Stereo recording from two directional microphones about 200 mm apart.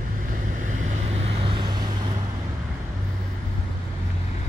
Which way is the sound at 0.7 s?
35° right (ahead or behind).